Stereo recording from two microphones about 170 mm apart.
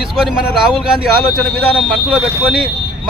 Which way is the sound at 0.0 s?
5° right (ahead or behind).